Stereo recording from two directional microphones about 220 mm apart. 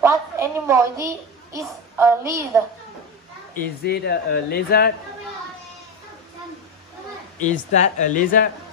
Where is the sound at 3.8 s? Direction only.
45° left (ahead or behind).